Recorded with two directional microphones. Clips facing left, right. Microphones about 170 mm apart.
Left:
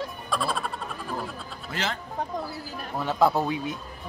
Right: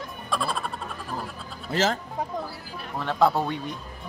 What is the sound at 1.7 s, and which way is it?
Speech, 45° right (ahead or behind).